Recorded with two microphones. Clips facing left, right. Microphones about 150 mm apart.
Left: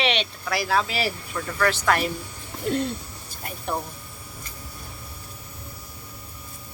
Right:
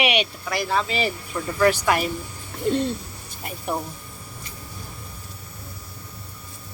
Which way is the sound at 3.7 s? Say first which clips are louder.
Right 1 dB; 5° right (ahead or behind).